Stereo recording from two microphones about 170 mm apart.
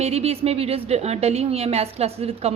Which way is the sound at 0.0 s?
35° right (ahead or behind).